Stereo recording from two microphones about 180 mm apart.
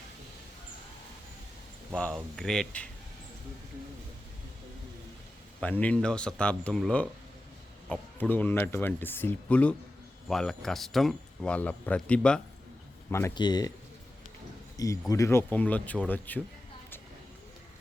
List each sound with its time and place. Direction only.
2.0 s speech: 5° left (ahead or behind)
5.5 s speech: 10° left (ahead or behind)
14.8 s speech: 20° left (ahead or behind)